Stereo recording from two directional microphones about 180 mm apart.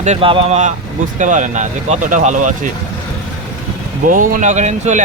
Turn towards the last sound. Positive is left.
turn(degrees=-40)  # may be behind; listen again after turning